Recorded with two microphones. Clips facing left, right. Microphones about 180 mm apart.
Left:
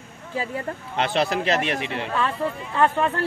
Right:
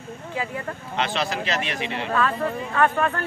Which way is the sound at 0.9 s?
55° left (ahead or behind).